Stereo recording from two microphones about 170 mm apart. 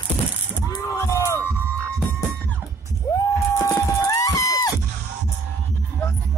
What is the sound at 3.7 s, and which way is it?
Music, 20° left (ahead or behind).